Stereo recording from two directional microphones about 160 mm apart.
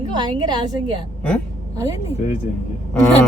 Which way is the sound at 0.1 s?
25° right (ahead or behind).